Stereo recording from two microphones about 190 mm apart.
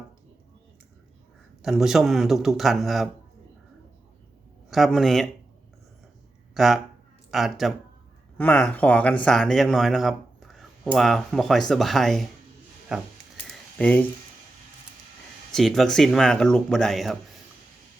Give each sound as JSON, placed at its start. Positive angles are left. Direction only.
{"t": 1.6, "sound": "speech", "side_deg": 0}
{"t": 4.7, "sound": "speech", "side_deg": 0}
{"t": 6.5, "sound": "speech", "side_deg": 0}
{"t": 8.4, "sound": "speech", "side_deg": 10}
{"t": 13.7, "sound": "speech", "side_deg": 5}
{"t": 15.5, "sound": "speech", "side_deg": 0}